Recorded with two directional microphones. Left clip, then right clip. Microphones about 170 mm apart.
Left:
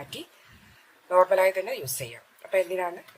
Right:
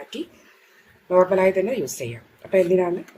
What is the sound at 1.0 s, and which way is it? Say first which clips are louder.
A woman's voice: right 3 dB; 5° left (ahead or behind).